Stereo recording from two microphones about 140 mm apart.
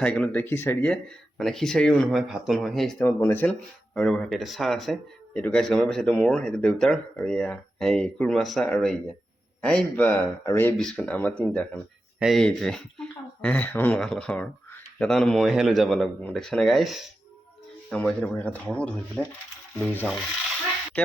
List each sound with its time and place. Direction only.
0.0 s speech: 10° left (ahead or behind)
1.4 s speech: 5° left (ahead or behind)
3.1 s speech: 15° left (ahead or behind)
3.9 s speech: 5° left (ahead or behind)
10.8 s speech: 5° left (ahead or behind)